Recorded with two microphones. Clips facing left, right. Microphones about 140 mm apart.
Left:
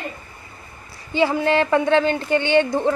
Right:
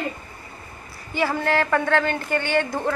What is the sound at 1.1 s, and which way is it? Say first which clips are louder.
Speech: left 4 dB; 20° left (ahead or behind).